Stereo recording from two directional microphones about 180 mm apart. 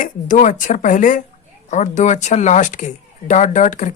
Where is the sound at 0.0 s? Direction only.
45° left (ahead or behind).